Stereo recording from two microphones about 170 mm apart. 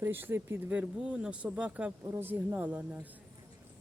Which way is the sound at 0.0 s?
10° right (ahead or behind).